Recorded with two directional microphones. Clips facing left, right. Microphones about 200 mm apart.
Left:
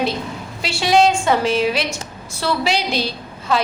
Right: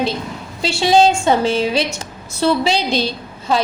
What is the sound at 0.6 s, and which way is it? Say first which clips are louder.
A woman's voice: right 2 dB; 25° right (ahead or behind).